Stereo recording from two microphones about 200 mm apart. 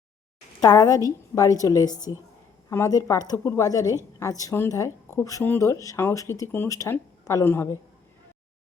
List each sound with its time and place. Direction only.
0.6 s speech: 20° left (ahead or behind)